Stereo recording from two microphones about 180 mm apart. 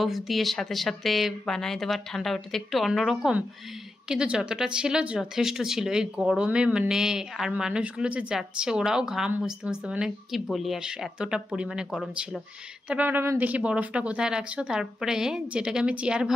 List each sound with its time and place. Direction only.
0.0 s speech: centre (ahead or behind)